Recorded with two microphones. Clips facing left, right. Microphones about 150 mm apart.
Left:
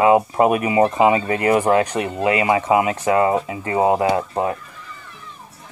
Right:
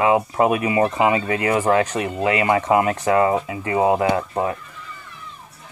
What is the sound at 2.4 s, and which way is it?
Speech, 15° left (ahead or behind).